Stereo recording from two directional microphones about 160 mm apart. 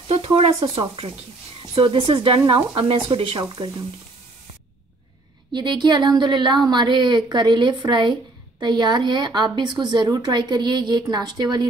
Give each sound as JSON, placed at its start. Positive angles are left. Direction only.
{"t": 0.1, "sound": "frying", "side_deg": -35}
{"t": 0.7, "sound": "speech", "side_deg": -35}
{"t": 5.5, "sound": "speech", "side_deg": -30}